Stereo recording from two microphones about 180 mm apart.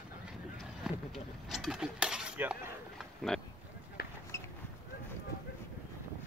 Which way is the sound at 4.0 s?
60° left (ahead or behind).